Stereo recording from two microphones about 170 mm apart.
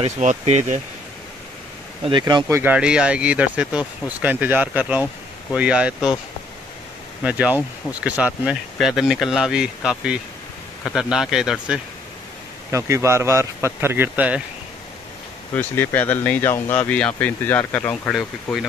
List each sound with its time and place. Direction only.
0.0 s speech: 45° right (ahead or behind)
2.0 s speech: 25° right (ahead or behind); by 6.0 s 5° right (ahead or behind)
7.2 s speech: 10° right (ahead or behind)
12.7 s speech: 15° right (ahead or behind)
15.5 s speech: 10° left (ahead or behind)
18.1 s speech: centre (ahead or behind)